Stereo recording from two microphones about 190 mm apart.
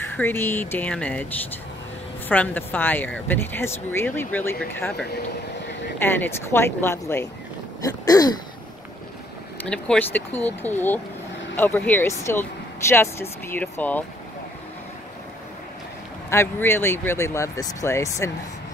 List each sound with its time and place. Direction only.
0.1 s speech: 10° left (ahead or behind)
2.2 s speech: 10° left (ahead or behind)
5.9 s speech: 10° left (ahead or behind)
7.8 s throat clearing: 20° left (ahead or behind)
9.7 s speech: 5° left (ahead or behind)
16.3 s speech: 10° left (ahead or behind)